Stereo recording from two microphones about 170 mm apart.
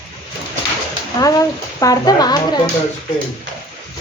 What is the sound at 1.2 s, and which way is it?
A woman's voice, 20° left (ahead or behind).